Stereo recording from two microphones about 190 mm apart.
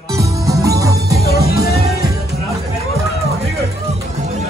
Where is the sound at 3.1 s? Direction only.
35° right (ahead or behind).